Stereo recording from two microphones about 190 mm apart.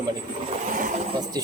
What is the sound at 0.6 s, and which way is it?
Vehicle, 45° right (ahead or behind).